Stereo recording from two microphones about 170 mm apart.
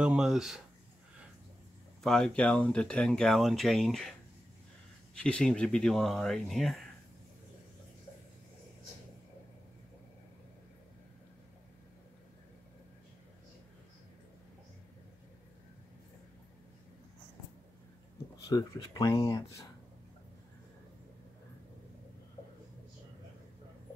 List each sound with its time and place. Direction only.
0.0 s speech: 5° right (ahead or behind)
2.0 s speech: 5° left (ahead or behind)
5.1 s speech: 5° left (ahead or behind)
18.5 s speech: 20° left (ahead or behind)